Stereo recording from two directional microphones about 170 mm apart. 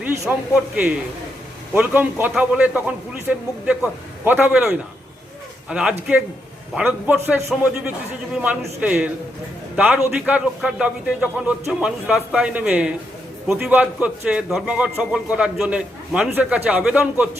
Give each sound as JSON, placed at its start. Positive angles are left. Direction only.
{"t": 0.3, "sound": "a man's voice", "side_deg": -10}
{"t": 1.7, "sound": "a man's voice", "side_deg": -10}